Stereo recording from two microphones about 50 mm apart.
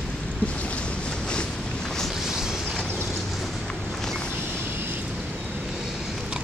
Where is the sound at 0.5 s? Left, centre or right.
Left.